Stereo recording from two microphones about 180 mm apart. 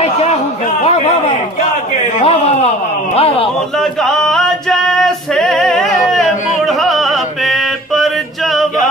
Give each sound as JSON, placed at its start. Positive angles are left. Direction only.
{"t": 0.0, "sound": "a sound", "side_deg": 35}
{"t": 3.2, "sound": "speech", "side_deg": 35}
{"t": 4.0, "sound": "music", "side_deg": 0}